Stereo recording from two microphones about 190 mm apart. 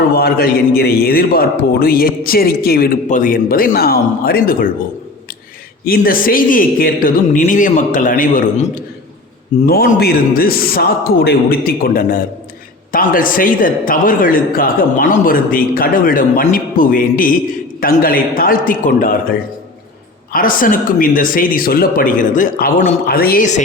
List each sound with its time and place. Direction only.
0.1 s a man's voice: 55° left (ahead or behind)
5.8 s a man's voice: 50° left (ahead or behind)
9.6 s a man's voice: 55° left (ahead or behind)